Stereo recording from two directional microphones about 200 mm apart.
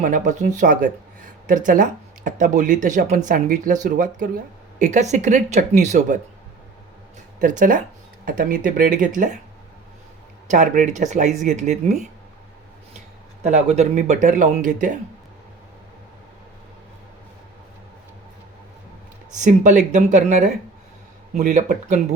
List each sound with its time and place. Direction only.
0.0 s speech: 40° right (ahead or behind)
7.4 s speech: 40° right (ahead or behind)
10.5 s speech: 40° right (ahead or behind)
13.4 s speech: 35° right (ahead or behind)
19.4 s speech: 40° right (ahead or behind)